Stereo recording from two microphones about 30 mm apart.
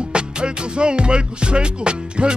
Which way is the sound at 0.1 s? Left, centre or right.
Right.